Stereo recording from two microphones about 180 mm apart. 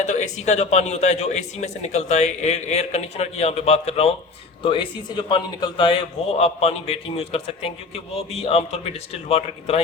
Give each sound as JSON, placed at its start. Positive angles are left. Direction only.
{"t": 0.0, "sound": "a man's voice", "side_deg": 40}